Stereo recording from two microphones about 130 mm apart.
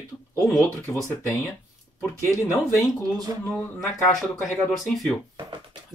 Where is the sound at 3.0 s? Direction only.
30° right (ahead or behind).